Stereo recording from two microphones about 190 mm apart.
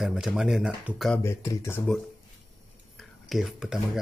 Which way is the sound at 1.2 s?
15° left (ahead or behind).